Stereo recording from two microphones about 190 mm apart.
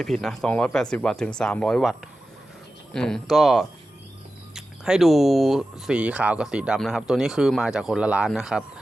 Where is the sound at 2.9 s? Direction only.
5° left (ahead or behind).